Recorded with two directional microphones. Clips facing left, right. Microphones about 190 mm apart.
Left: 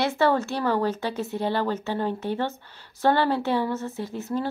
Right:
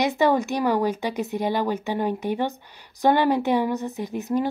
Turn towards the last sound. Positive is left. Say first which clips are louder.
# right 4 dB
turn(degrees=-15)  # may be behind; listen again after turning